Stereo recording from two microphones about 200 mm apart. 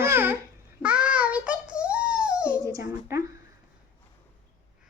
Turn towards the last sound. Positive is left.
turn(degrees=-15)  # may be behind; listen again after turning